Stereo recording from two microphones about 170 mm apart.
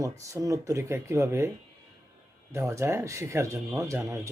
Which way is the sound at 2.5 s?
15° right (ahead or behind).